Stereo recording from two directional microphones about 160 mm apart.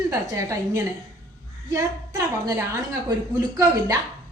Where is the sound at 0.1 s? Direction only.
20° right (ahead or behind).